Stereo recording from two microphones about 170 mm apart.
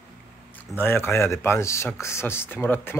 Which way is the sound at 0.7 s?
15° left (ahead or behind).